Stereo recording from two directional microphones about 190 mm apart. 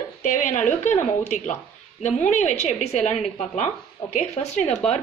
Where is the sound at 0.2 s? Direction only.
40° left (ahead or behind).